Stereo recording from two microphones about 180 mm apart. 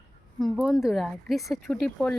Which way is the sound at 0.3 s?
Centre (ahead or behind).